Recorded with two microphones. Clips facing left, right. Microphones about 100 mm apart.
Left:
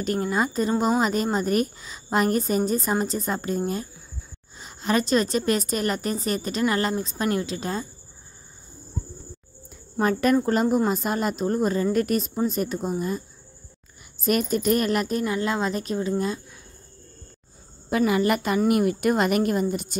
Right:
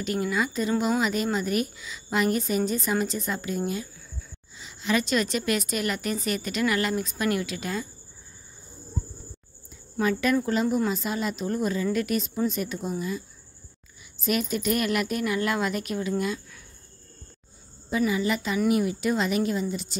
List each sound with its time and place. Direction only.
0.0 s a woman's voice: 40° left (ahead or behind)
9.9 s a woman's voice: 40° left (ahead or behind)
14.2 s a woman's voice: 45° left (ahead or behind)
17.8 s speech: 65° left (ahead or behind)